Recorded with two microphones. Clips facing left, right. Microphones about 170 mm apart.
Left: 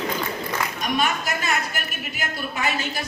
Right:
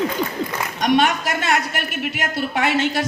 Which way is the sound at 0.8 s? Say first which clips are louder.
Right 9 dB; 80° right.